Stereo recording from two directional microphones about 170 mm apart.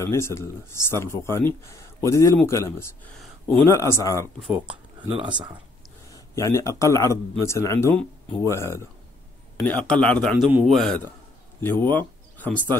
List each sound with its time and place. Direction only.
0.0 s speech: 15° left (ahead or behind)
5.0 s speech: 30° right (ahead or behind)
6.1 s speech: 20° left (ahead or behind)
10.3 s a man's voice: 5° right (ahead or behind); by 12.7 s 10° left (ahead or behind)